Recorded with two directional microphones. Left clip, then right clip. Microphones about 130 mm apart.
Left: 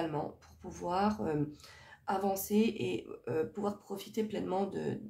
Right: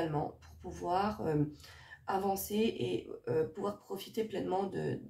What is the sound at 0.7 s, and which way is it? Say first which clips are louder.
Speech: even; 35° left (ahead or behind).